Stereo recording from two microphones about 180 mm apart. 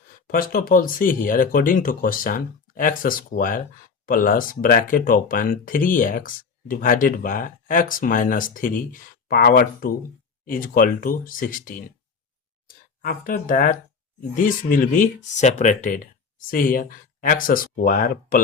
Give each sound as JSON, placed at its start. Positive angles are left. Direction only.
{"t": 0.3, "sound": "speech", "side_deg": 55}